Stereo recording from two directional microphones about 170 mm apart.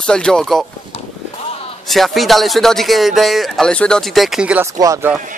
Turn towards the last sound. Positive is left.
turn(degrees=-20)  # may be behind; listen again after turning